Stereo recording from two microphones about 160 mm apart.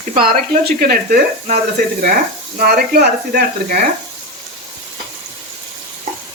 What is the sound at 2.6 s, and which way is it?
Speech, 75° right (ahead or behind).